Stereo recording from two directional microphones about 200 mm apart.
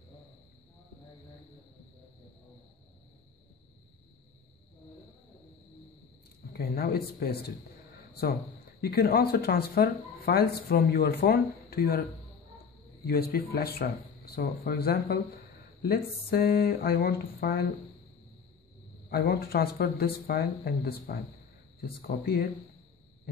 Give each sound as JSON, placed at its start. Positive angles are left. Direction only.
{"t": 6.5, "sound": "speech", "side_deg": 50}
{"t": 8.1, "sound": "a sound", "side_deg": 50}
{"t": 8.8, "sound": "speech", "side_deg": 50}
{"t": 13.0, "sound": "speech", "side_deg": 50}
{"t": 19.0, "sound": "speech", "side_deg": 50}